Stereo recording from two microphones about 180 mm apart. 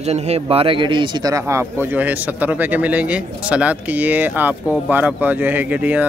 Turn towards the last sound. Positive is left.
turn(degrees=-10)  # may be behind; listen again after turning